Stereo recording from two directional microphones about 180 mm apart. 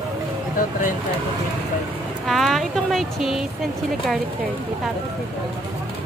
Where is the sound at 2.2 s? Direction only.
Centre (ahead or behind).